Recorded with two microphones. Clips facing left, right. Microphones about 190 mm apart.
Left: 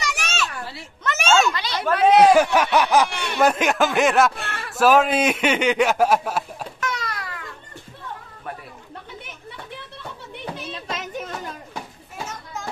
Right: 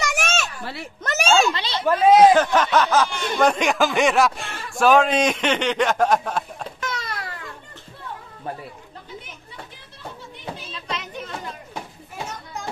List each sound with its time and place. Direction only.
0.0 s children playing: 50° right (ahead or behind)
1.0 s a sound: 35° right (ahead or behind)
2.0 s speech: 70° left (ahead or behind)
2.3 s a man's voice: 10° left (ahead or behind)
6.8 s a sound: 25° right (ahead or behind)
10.9 s music: 45° left (ahead or behind)